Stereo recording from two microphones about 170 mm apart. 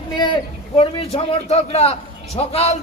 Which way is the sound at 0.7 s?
35° left (ahead or behind).